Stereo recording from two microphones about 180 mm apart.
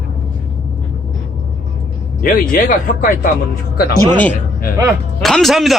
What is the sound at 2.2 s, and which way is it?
Speech, 50° left (ahead or behind).